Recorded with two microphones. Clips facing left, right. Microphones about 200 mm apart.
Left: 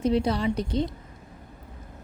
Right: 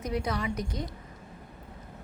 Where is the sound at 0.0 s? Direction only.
30° left (ahead or behind).